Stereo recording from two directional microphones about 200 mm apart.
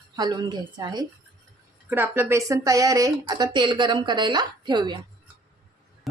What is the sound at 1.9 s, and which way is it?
A woman's voice, 10° right (ahead or behind).